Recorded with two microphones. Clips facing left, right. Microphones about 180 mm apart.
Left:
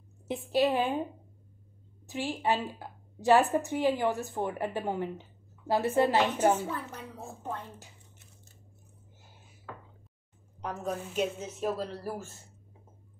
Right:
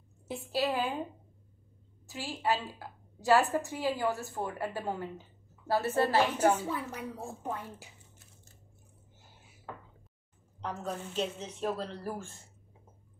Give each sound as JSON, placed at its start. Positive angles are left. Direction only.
{"t": 0.3, "sound": "a woman's voice", "side_deg": 20}
{"t": 2.0, "sound": "a woman's voice", "side_deg": 20}
{"t": 6.7, "sound": "a woman's voice", "side_deg": -10}
{"t": 10.6, "sound": "speech", "side_deg": 10}